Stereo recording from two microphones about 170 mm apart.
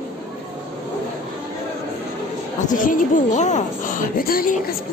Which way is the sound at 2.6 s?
50° left (ahead or behind).